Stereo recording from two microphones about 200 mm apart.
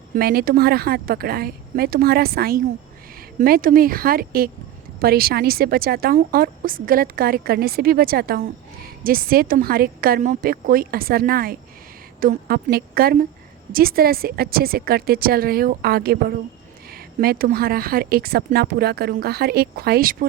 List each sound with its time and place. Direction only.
0.1 s a woman's voice: 50° right (ahead or behind)